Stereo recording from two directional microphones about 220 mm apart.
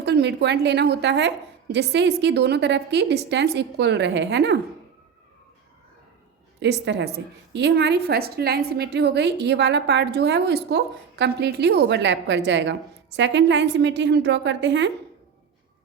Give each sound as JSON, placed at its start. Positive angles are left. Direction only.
{"t": 0.0, "sound": "a woman's voice", "side_deg": -50}
{"t": 6.6, "sound": "a woman's voice", "side_deg": -50}